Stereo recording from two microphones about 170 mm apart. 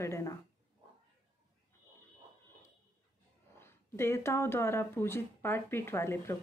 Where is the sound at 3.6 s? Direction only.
15° left (ahead or behind).